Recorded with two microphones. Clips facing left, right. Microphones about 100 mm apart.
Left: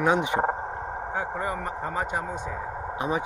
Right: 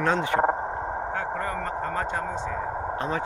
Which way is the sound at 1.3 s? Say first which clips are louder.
Right 1 dB; 10° left (ahead or behind).